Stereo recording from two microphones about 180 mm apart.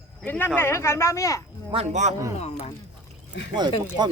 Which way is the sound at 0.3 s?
10° left (ahead or behind).